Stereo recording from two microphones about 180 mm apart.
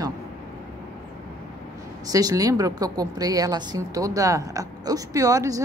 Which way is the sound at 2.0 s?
20° right (ahead or behind).